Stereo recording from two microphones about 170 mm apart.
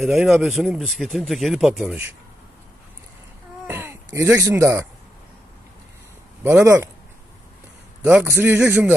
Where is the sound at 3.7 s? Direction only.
15° right (ahead or behind).